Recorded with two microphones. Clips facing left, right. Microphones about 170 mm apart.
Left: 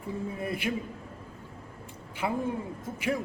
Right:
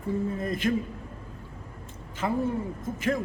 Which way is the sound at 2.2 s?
10° left (ahead or behind).